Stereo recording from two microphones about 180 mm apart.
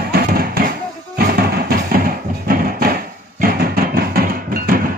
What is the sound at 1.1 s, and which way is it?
Music, 60° right (ahead or behind).